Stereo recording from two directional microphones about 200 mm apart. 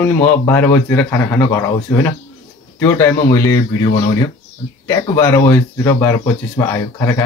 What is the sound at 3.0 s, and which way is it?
Speech, 15° left (ahead or behind).